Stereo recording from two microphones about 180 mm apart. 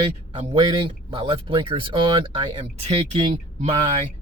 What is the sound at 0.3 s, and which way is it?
Speech, 25° right (ahead or behind).